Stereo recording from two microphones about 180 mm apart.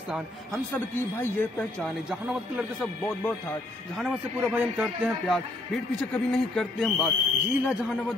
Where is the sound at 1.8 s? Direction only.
5° right (ahead or behind).